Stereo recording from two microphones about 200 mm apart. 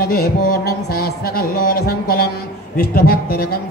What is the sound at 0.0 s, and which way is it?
Speech, 50° left (ahead or behind).